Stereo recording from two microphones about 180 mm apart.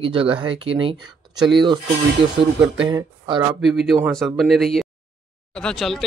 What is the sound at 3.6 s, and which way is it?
Speech, centre (ahead or behind).